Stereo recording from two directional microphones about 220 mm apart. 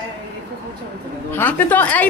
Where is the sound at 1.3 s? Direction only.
10° left (ahead or behind).